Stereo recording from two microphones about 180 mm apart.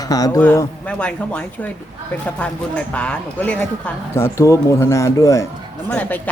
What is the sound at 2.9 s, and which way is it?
Speech, 5° left (ahead or behind).